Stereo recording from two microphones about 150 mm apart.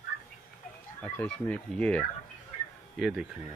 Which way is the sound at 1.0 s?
10° left (ahead or behind).